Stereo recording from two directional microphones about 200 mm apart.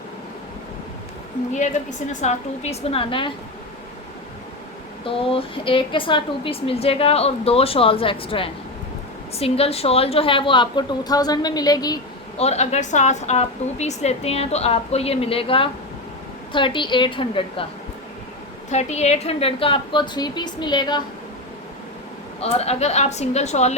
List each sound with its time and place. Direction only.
1.5 s a woman's voice: 35° left (ahead or behind)
5.0 s a woman's voice: 25° left (ahead or behind)
12.4 s a woman's voice: 35° left (ahead or behind)
18.7 s a woman's voice: 35° left (ahead or behind)
22.4 s a woman's voice: 30° left (ahead or behind)